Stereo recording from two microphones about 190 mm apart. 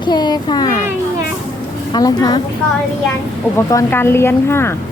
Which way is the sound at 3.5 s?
15° left (ahead or behind).